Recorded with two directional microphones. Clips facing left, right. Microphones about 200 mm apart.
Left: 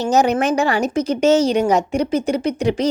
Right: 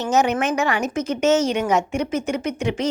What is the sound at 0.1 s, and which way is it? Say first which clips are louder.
A woman's voice: left 3 dB; 35° left (ahead or behind).